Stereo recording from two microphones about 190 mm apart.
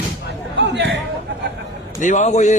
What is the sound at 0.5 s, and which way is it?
Chatter, 65° right (ahead or behind).